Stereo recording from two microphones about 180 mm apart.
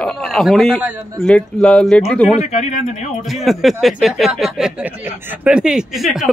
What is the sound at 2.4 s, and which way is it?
Speech, 35° left (ahead or behind).